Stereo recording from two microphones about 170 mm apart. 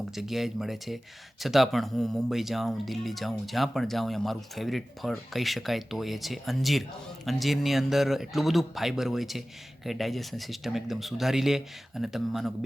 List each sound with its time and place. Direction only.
0.1 s speech: centre (ahead or behind)